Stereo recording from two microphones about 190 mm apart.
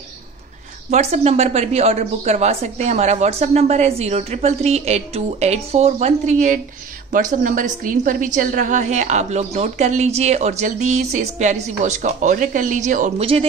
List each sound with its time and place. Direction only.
0.8 s a woman's voice: 35° right (ahead or behind)
13.2 s speech: 30° right (ahead or behind)